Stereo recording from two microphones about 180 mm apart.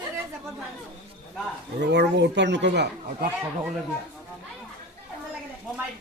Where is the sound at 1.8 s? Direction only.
70° right (ahead or behind).